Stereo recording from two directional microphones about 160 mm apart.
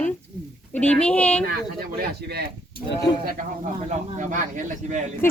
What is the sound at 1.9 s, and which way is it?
Speech, 85° right.